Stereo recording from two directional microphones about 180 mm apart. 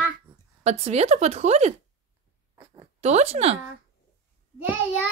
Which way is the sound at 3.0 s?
35° right (ahead or behind).